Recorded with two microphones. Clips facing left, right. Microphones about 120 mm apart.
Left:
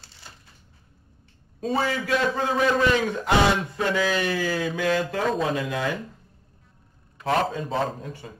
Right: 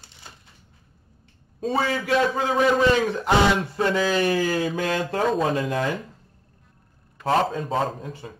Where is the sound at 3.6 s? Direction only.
30° right (ahead or behind).